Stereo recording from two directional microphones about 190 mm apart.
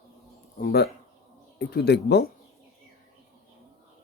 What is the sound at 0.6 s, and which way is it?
Speech, 55° left (ahead or behind).